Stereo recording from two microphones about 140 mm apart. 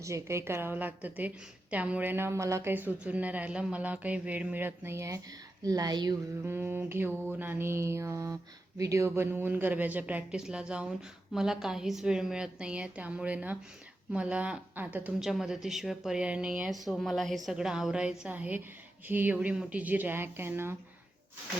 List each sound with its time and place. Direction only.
0.0 s a woman's voice: 20° right (ahead or behind)
6.4 s a woman's voice: 15° right (ahead or behind)